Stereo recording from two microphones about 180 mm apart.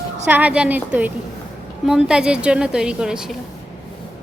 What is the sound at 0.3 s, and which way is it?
A woman's voice, 10° right (ahead or behind).